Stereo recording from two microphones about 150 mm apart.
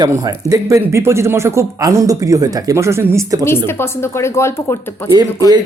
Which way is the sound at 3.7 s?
15° left (ahead or behind).